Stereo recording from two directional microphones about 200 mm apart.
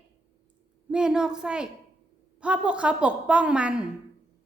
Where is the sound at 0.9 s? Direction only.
5° right (ahead or behind).